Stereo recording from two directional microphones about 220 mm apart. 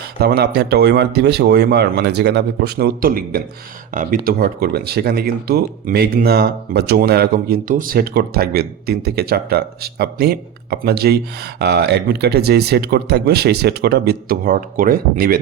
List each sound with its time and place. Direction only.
0.2 s speech: 45° right (ahead or behind)